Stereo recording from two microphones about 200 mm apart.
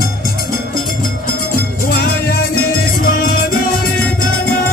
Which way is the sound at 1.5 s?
50° left (ahead or behind).